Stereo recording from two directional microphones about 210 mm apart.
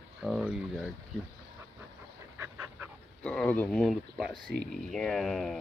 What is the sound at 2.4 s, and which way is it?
Dog, 10° right (ahead or behind).